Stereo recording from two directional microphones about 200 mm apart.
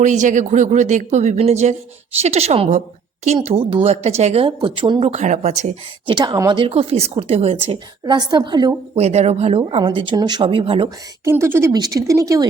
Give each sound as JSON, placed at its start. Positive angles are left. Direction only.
{"t": 0.0, "sound": "a woman's voice", "side_deg": -40}
{"t": 6.1, "sound": "a woman's voice", "side_deg": -20}
{"t": 11.3, "sound": "speech", "side_deg": -10}